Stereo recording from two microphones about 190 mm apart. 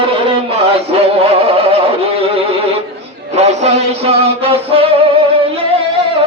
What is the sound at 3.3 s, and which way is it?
Music, 35° right (ahead or behind).